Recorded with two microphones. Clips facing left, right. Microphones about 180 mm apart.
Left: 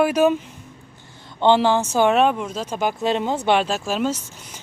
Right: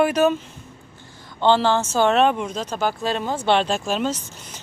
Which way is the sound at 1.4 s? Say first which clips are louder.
Left 1 dB; 15° left (ahead or behind).